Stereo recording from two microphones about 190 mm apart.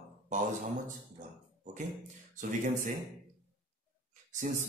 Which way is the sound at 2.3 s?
40° right (ahead or behind).